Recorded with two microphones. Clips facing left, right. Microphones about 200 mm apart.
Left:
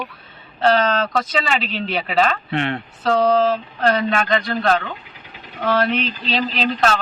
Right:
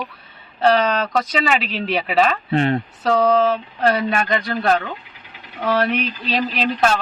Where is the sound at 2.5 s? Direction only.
35° right (ahead or behind).